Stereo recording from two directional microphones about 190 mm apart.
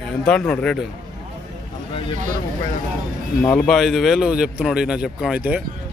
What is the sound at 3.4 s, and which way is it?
Speech, 5° left (ahead or behind).